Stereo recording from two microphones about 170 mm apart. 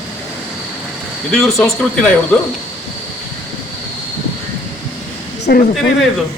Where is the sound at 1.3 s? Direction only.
Centre (ahead or behind).